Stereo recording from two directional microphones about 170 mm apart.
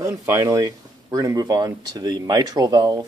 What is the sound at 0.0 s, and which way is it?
Speech, 15° right (ahead or behind).